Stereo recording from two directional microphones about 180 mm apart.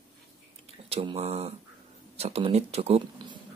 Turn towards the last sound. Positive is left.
turn(degrees=-35)  # may be behind; listen again after turning